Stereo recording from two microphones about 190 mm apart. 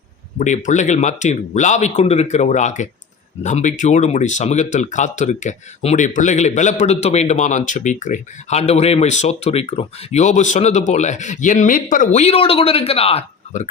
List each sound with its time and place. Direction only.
0.3 s speech: 40° left (ahead or behind)